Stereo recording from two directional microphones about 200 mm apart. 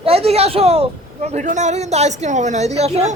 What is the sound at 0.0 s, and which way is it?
A woman's voice, 30° right (ahead or behind).